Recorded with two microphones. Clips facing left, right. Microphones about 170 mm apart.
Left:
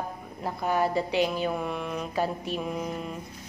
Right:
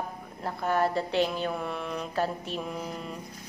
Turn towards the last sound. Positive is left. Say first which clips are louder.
# left 3 dB
turn(degrees=10)  # may be behind; listen again after turning